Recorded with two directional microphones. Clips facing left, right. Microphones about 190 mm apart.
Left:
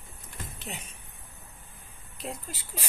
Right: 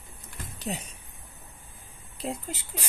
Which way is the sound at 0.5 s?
40° right (ahead or behind).